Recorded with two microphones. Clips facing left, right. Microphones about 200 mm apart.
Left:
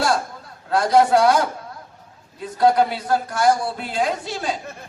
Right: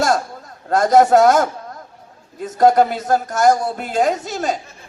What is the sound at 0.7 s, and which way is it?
Speech, 45° right (ahead or behind).